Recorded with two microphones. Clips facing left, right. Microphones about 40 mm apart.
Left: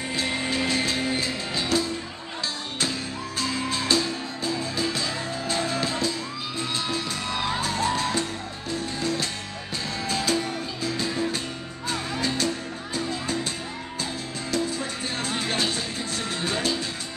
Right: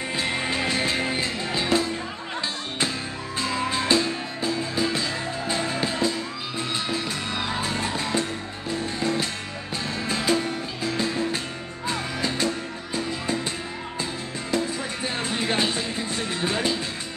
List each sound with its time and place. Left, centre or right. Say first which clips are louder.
0.1 s music: even; centre
3.3 s music: right 2 dB; centre
7.6 s music: left 2 dB; right
14.5 s music: right 1 dB; centre